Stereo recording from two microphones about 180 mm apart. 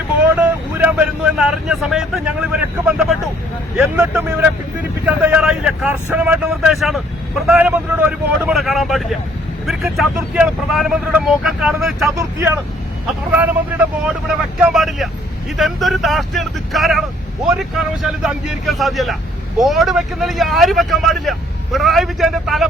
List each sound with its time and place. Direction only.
0.3 s speech: 10° right (ahead or behind)
12.1 s speech: 15° right (ahead or behind)
14.0 s speech: 5° right (ahead or behind)